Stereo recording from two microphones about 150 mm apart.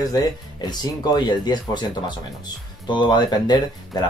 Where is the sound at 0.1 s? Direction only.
25° left (ahead or behind).